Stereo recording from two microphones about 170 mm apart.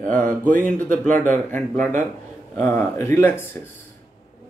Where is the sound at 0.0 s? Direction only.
50° right (ahead or behind).